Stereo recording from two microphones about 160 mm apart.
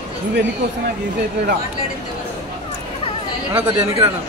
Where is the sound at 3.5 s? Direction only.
20° right (ahead or behind).